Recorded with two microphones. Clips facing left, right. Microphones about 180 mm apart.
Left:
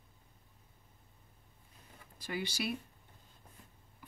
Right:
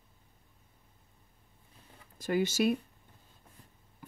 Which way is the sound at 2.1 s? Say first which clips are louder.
Right 10 dB; 45° right (ahead or behind).